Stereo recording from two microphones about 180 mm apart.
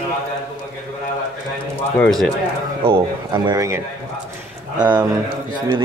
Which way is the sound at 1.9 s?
5° left (ahead or behind).